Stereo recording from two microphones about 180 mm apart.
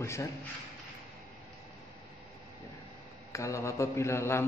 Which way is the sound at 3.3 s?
15° left (ahead or behind).